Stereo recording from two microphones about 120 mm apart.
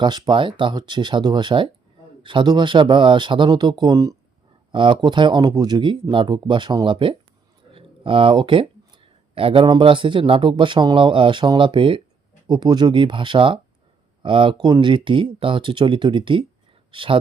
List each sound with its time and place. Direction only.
0.0 s speech: 40° right (ahead or behind)
4.7 s speech: 45° right (ahead or behind)
7.7 s a sound: 50° right (ahead or behind)
9.3 s a man's voice: 50° right (ahead or behind)